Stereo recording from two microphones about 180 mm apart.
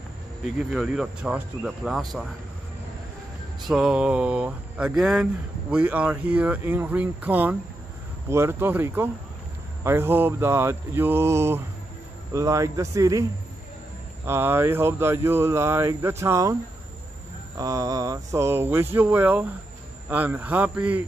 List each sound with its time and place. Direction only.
0.6 s speech: 5° right (ahead or behind)
3.6 s speech: 5° right (ahead or behind); by 13.2 s 20° right (ahead or behind)
14.2 s speech: 15° right (ahead or behind)
17.6 s speech: 20° right (ahead or behind)